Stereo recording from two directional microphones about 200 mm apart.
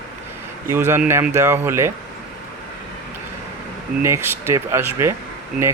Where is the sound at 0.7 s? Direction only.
10° right (ahead or behind).